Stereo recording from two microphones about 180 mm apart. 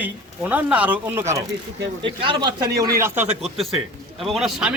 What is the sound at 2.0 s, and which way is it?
A man's voice, 25° right (ahead or behind).